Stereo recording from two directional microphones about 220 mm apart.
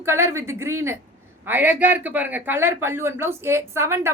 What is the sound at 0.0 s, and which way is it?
Speech, 10° right (ahead or behind).